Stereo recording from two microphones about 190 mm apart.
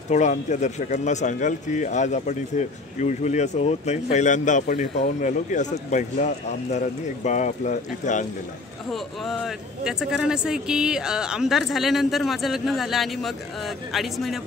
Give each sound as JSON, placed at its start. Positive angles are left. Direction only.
{"t": 0.1, "sound": "a man's voice", "side_deg": 40}
{"t": 8.9, "sound": "speech", "side_deg": 0}